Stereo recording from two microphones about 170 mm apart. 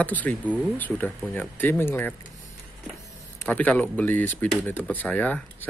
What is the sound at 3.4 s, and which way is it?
Speech, 5° left (ahead or behind).